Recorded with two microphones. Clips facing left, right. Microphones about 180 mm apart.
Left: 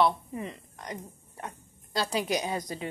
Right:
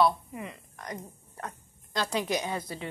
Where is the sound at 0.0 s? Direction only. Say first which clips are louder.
Even; 30° left (ahead or behind).